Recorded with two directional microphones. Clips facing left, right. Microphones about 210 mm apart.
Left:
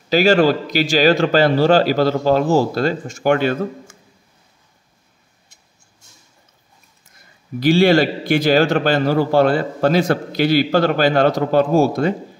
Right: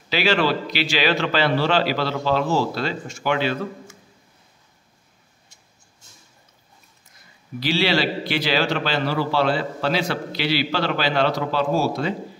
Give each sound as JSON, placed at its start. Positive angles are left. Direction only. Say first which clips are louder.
{"t": 0.1, "sound": "a man's voice", "louder": "left 7 dB", "side_deg": 45}
{"t": 7.6, "sound": "a man's voice", "louder": "left 8 dB", "side_deg": 50}